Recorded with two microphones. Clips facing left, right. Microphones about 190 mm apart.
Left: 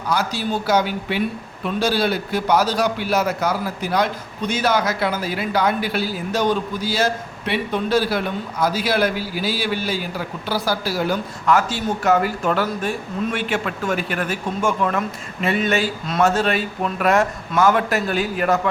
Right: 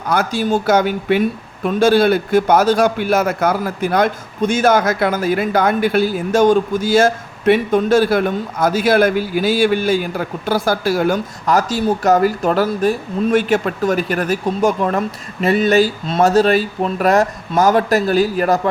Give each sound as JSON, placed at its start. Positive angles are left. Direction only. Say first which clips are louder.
{"t": 0.1, "sound": "a man's voice", "louder": "right 6 dB", "side_deg": -50}
{"t": 11.4, "sound": "speech", "louder": "right 3 dB", "side_deg": -40}